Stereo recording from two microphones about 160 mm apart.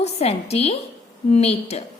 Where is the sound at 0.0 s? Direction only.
40° left (ahead or behind).